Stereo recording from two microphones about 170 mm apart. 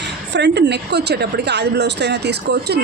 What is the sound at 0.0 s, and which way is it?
A woman's voice, 90° right.